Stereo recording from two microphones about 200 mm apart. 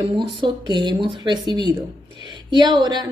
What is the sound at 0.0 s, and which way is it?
Speech, 25° right (ahead or behind).